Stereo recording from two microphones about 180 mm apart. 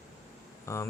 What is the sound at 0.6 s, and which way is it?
Speech, 15° left (ahead or behind).